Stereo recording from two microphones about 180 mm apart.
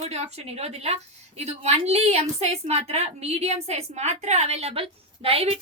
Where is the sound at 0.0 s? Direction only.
35° right (ahead or behind).